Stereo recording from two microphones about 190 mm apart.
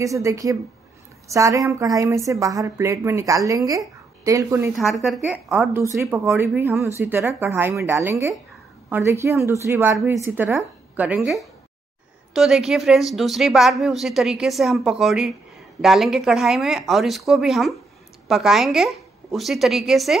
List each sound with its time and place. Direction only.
0.0 s a woman's voice: 15° right (ahead or behind)
4.7 s a woman's voice: centre (ahead or behind)
5.7 s a woman's voice: 15° right (ahead or behind)